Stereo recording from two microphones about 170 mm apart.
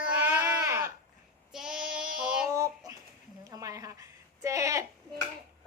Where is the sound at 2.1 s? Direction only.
5° right (ahead or behind).